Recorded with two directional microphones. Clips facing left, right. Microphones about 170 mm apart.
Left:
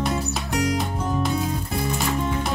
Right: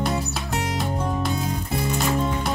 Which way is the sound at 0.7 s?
Centre (ahead or behind).